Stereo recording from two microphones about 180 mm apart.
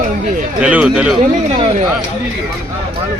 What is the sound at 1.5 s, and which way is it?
Speech, 35° right (ahead or behind).